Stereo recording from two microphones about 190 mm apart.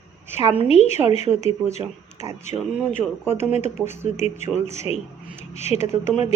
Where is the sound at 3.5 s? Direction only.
40° left (ahead or behind).